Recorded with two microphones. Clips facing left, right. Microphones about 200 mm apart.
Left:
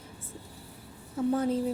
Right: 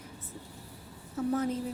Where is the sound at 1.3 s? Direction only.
30° left (ahead or behind).